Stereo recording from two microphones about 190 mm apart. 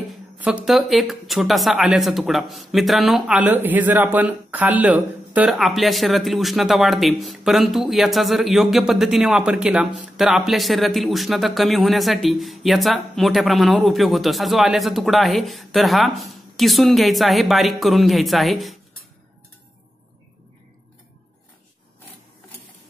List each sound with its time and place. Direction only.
0.4 s speech: 5° right (ahead or behind)